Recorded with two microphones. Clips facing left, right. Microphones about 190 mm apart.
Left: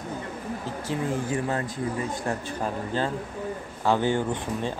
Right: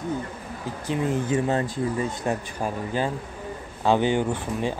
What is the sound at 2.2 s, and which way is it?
Speech, 15° right (ahead or behind).